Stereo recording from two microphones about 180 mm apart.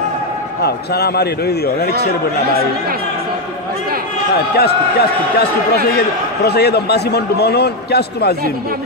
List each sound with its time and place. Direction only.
0.6 s a man's voice: 60° left (ahead or behind)
4.6 s a man's voice: 60° left (ahead or behind)